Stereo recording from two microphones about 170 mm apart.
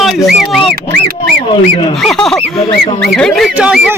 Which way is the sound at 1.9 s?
Centre (ahead or behind).